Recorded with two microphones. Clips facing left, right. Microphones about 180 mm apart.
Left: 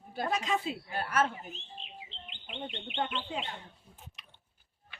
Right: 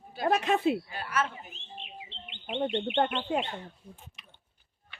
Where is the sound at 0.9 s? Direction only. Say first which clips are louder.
Left 2 dB; 50° left (ahead or behind).